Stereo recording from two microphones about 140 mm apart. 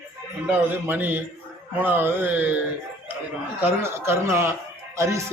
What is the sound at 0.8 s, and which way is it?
Speech, 15° right (ahead or behind).